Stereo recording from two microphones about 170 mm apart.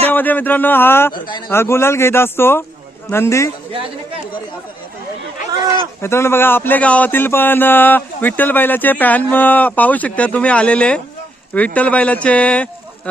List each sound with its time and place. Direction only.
0.1 s speech: 10° left (ahead or behind)
1.1 s speech: 25° left (ahead or behind)
1.5 s speech: 15° left (ahead or behind)
6.0 s speech: 15° left (ahead or behind)